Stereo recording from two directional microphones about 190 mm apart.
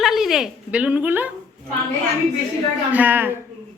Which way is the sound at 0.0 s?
Centre (ahead or behind).